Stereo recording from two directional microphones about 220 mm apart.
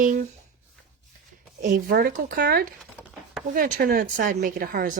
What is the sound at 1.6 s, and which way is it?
Speech, 40° right (ahead or behind).